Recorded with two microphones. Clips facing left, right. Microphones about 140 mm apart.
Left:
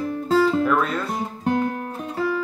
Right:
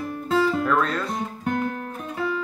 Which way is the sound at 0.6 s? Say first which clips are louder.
Left 2 dB; 5° left (ahead or behind).